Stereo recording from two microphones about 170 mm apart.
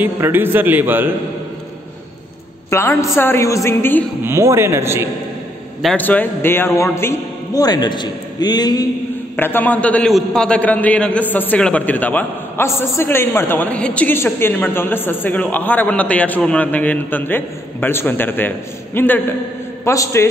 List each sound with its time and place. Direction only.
0.0 s a man's voice: 10° right (ahead or behind)
2.7 s a man's voice: 15° left (ahead or behind)
4.2 s a man's voice: 15° right (ahead or behind)
5.8 s a man's voice: 5° left (ahead or behind); by 8.8 s 25° left (ahead or behind)
9.4 s a man's voice: 10° left (ahead or behind)